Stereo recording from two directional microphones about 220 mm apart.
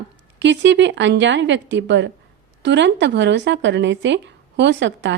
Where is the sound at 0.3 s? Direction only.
55° right (ahead or behind).